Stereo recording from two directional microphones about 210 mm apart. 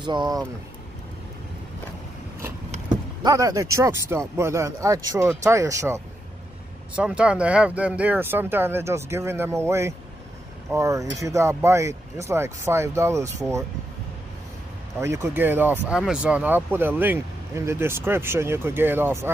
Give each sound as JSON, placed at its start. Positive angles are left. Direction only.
{"t": 0.0, "sound": "speech", "side_deg": -20}
{"t": 2.7, "sound": "vehicle", "side_deg": -20}
{"t": 3.7, "sound": "speech", "side_deg": -15}
{"t": 15.0, "sound": "speech", "side_deg": -15}